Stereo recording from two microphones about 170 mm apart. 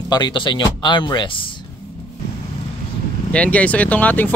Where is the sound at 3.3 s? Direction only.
5° left (ahead or behind).